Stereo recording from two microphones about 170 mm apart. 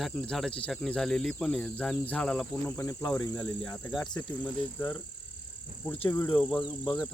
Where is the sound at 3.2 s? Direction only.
20° left (ahead or behind).